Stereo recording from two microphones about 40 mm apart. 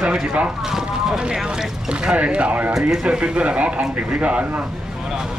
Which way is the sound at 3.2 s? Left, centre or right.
Right.